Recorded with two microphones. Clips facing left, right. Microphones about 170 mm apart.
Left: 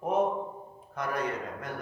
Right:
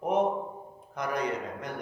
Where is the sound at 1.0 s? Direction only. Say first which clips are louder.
Right 1 dB; 15° right (ahead or behind).